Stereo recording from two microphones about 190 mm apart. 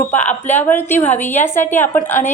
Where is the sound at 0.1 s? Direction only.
10° left (ahead or behind).